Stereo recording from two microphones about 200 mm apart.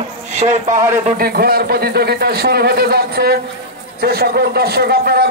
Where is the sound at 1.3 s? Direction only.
50° right (ahead or behind).